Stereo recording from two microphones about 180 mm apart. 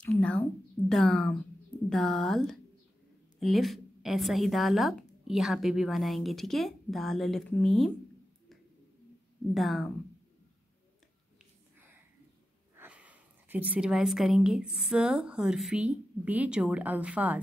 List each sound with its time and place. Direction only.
0.0 s a woman's voice: 5° left (ahead or behind)
9.5 s a woman's voice: centre (ahead or behind)
12.7 s speech: 10° right (ahead or behind)